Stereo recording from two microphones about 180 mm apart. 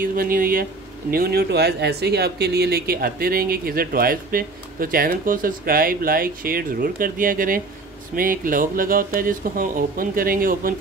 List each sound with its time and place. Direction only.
0.0 s speech: 50° right (ahead or behind)